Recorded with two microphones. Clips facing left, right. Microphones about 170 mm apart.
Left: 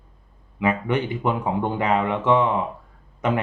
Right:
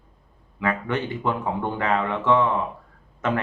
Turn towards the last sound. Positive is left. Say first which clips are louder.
# left 2 dB
turn(degrees=15)  # may be behind; listen again after turning